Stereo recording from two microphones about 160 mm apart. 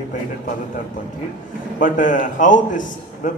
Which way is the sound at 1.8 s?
55° left (ahead or behind).